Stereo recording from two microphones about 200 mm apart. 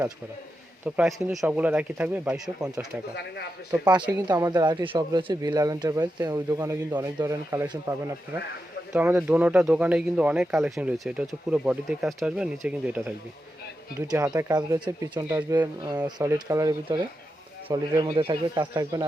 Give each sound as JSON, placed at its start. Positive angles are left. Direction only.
{"t": 0.9, "sound": "speech", "side_deg": -5}
{"t": 4.3, "sound": "speech", "side_deg": -15}
{"t": 14.3, "sound": "speech", "side_deg": -15}